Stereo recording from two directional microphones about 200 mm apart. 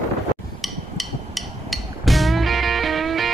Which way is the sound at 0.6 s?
Centre (ahead or behind).